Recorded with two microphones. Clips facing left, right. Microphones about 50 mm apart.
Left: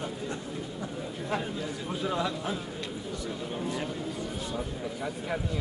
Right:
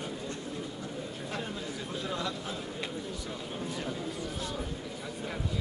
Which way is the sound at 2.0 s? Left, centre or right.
Centre.